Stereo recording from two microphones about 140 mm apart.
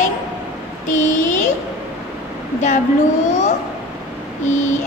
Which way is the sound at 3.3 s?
60° left (ahead or behind).